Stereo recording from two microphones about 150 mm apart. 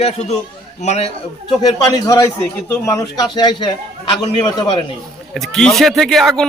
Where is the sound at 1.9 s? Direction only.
25° left (ahead or behind).